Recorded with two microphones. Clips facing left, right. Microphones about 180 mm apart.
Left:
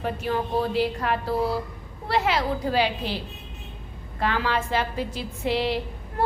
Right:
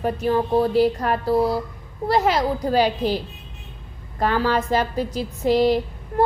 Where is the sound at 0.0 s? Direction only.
40° right (ahead or behind).